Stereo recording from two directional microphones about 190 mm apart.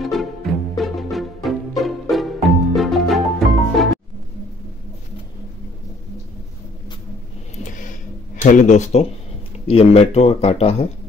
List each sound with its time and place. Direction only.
0.0 s music: centre (ahead or behind)
8.4 s speech: 40° left (ahead or behind)